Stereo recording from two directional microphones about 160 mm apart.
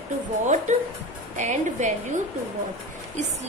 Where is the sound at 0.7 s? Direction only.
45° right (ahead or behind).